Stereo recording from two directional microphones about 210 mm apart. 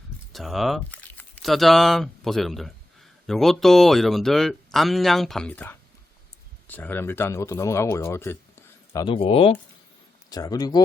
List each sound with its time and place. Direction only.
0.3 s speech: centre (ahead or behind)
9.0 s speech: 25° left (ahead or behind)